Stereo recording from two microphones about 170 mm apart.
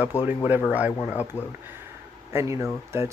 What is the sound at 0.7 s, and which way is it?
Speech, 10° right (ahead or behind).